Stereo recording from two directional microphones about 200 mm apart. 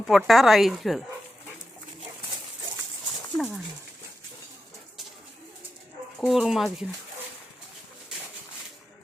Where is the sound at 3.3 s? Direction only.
Centre (ahead or behind).